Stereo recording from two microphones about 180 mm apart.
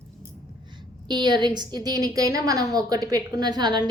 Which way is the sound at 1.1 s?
25° right (ahead or behind).